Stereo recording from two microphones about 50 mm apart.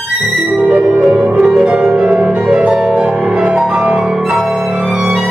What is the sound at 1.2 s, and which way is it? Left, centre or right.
Harp, right.